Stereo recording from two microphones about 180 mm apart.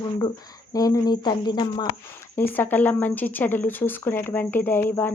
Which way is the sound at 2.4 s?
10° left (ahead or behind).